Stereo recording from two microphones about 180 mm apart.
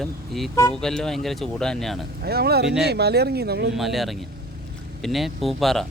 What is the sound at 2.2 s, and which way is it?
Speech, 60° right (ahead or behind).